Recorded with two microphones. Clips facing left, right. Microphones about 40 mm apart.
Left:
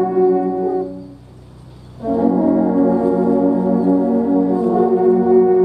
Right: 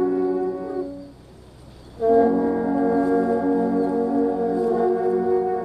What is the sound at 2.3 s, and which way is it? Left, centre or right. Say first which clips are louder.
Brass instrument: left 6 dB; centre.